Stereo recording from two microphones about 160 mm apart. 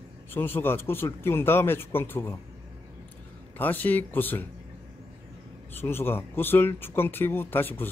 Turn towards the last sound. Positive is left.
turn(degrees=15)  # may be behind; listen again after turning